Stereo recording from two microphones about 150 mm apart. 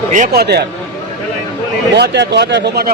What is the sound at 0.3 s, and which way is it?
Speech, 90° right.